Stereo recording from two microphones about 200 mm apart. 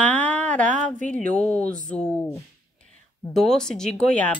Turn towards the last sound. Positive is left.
turn(degrees=5)  # may be behind; listen again after turning